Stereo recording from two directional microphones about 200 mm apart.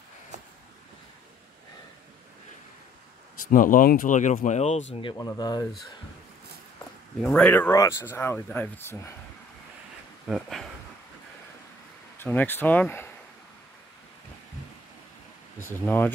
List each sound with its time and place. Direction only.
3.4 s speech: 40° left (ahead or behind)
5.1 s speech: 15° left (ahead or behind)
7.2 s speech: 5° left (ahead or behind)
10.2 s speech: centre (ahead or behind)
12.2 s speech: 10° left (ahead or behind)
15.8 s speech: 10° left (ahead or behind)